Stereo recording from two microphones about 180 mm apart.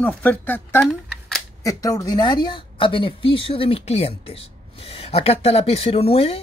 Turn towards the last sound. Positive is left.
turn(degrees=35)  # may be behind; listen again after turning